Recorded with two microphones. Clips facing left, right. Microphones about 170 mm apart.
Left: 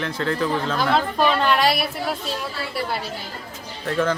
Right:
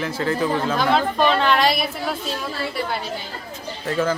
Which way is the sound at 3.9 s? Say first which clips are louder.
Even; 5° right (ahead or behind).